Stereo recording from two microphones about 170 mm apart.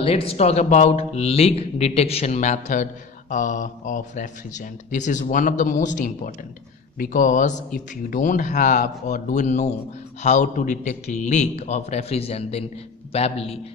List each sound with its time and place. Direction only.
0.0 s a man's voice: 35° left (ahead or behind)